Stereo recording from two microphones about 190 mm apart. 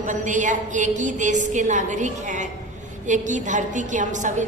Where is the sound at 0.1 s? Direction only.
40° right (ahead or behind).